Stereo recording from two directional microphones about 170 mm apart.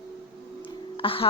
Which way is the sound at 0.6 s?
30° left (ahead or behind).